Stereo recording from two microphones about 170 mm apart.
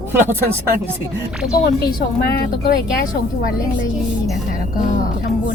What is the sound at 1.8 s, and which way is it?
Speech, 65° left (ahead or behind).